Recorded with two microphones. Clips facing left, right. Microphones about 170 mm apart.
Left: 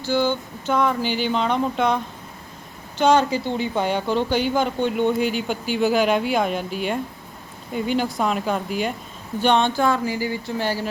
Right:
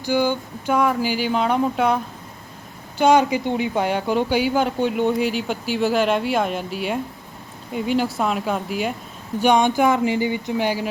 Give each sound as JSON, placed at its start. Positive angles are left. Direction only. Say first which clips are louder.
{"t": 0.0, "sound": "speech", "louder": "right 1 dB", "side_deg": -10}
{"t": 3.0, "sound": "speech", "louder": "right 2 dB", "side_deg": -10}